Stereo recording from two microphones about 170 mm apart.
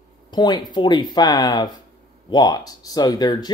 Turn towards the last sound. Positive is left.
turn(degrees=25)  # may be behind; listen again after turning